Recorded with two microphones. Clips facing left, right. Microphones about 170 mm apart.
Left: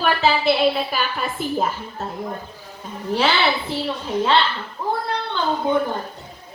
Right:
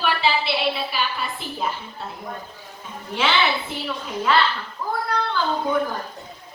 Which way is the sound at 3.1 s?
35° left (ahead or behind).